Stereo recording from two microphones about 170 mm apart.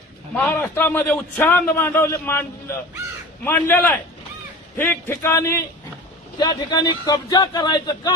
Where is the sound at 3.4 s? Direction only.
15° left (ahead or behind).